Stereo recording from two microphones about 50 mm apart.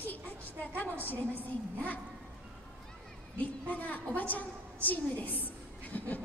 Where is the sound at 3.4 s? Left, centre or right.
Left.